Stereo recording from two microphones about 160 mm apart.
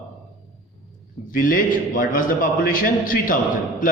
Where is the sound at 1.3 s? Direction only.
60° left (ahead or behind).